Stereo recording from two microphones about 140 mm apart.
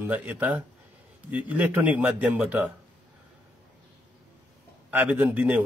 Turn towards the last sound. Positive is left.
turn(degrees=-10)  # may be behind; listen again after turning